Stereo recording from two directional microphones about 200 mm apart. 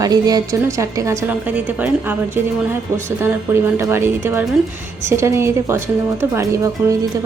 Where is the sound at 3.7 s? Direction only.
10° right (ahead or behind).